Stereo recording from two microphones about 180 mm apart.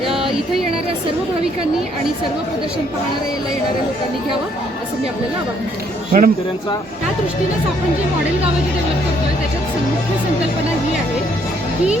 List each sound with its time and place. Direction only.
6.1 s speech: 55° right (ahead or behind)